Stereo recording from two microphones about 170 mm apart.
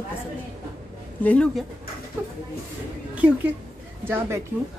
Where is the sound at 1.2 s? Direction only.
5° left (ahead or behind).